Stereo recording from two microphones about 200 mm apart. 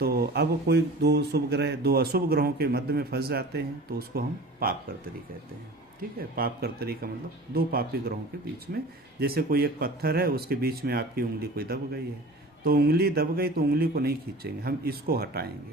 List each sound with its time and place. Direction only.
0.0 s speech: 50° right (ahead or behind)
6.1 s speech: 50° right (ahead or behind)
9.2 s speech: 50° right (ahead or behind)